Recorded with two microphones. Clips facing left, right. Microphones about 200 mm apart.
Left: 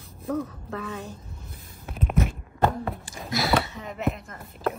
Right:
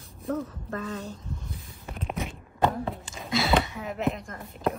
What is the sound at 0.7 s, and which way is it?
Speech, 75° left (ahead or behind).